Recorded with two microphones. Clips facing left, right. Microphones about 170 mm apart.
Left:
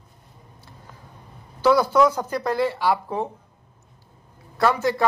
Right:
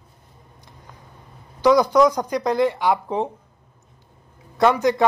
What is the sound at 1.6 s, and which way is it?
Speech, 15° right (ahead or behind).